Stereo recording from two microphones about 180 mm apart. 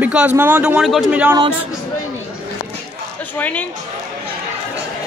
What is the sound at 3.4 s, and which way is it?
Speech, 10° left (ahead or behind).